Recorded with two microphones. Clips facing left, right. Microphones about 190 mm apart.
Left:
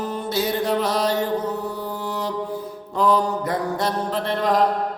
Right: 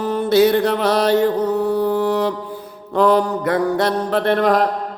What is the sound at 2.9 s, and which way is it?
Mantra, 65° right (ahead or behind).